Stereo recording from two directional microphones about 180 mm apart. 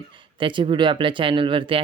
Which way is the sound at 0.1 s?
25° right (ahead or behind).